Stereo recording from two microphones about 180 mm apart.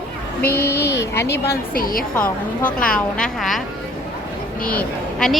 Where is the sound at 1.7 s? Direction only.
50° left (ahead or behind).